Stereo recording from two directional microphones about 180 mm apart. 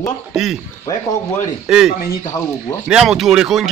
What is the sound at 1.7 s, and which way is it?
Speech, centre (ahead or behind).